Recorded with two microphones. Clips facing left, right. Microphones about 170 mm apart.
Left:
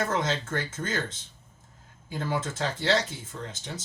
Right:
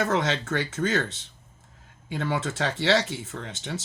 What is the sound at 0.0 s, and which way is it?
Speech, 70° right (ahead or behind).